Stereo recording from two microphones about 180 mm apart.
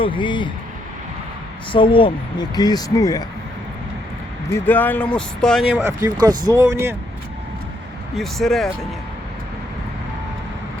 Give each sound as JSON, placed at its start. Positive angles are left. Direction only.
{"t": 0.0, "sound": "speech", "side_deg": 25}
{"t": 1.7, "sound": "speech", "side_deg": 30}
{"t": 4.5, "sound": "speech", "side_deg": 10}
{"t": 5.7, "sound": "speech", "side_deg": -15}
{"t": 8.1, "sound": "speech", "side_deg": 0}